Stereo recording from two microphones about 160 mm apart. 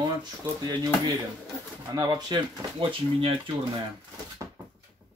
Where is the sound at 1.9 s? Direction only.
25° right (ahead or behind).